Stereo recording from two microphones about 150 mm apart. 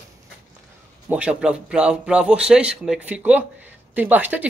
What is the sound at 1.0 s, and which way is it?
Speech, 10° right (ahead or behind).